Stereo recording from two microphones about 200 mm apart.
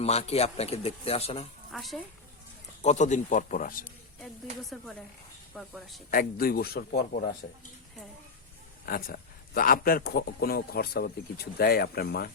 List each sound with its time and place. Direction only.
0.0 s speech: 30° left (ahead or behind)
1.7 s speech: centre (ahead or behind)
2.8 s speech: 35° left (ahead or behind)
5.5 s speech: centre (ahead or behind)
6.1 s a man's voice: 45° left (ahead or behind)
8.9 s a man's voice: 45° left (ahead or behind)